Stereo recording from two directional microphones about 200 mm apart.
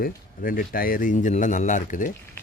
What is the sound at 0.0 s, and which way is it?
A man's voice, 45° left (ahead or behind).